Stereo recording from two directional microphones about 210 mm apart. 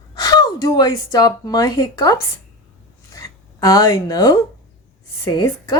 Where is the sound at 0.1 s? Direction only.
20° left (ahead or behind).